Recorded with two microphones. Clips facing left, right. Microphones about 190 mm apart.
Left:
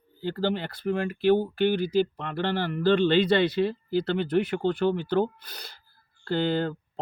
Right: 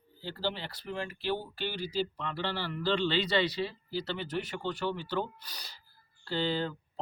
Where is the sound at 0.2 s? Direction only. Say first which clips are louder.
Left 8 dB; 55° left (ahead or behind).